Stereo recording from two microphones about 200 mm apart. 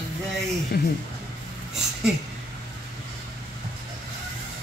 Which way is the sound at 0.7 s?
50° left (ahead or behind).